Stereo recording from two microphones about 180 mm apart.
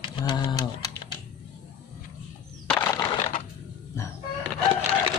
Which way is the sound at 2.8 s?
20° left (ahead or behind).